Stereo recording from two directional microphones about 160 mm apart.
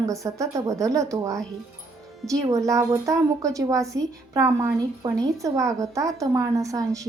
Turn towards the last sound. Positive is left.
turn(degrees=-20)  # may be behind; listen again after turning